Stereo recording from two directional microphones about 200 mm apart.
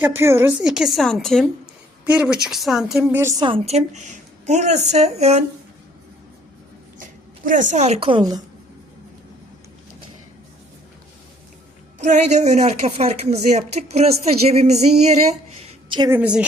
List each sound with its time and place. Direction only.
0.0 s a woman's voice: 10° right (ahead or behind)
3.4 s a woman's voice: 30° right (ahead or behind)
7.0 s a woman's voice: 40° right (ahead or behind); by 8.4 s 20° right (ahead or behind)
11.9 s a woman's voice: 35° right (ahead or behind)
16.0 s a woman's voice: 10° right (ahead or behind)